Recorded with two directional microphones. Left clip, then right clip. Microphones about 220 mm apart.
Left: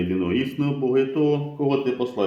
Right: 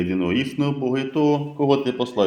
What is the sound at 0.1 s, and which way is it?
Speech, 35° right (ahead or behind).